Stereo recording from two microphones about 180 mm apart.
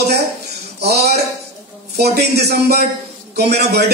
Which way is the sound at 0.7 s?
65° right (ahead or behind).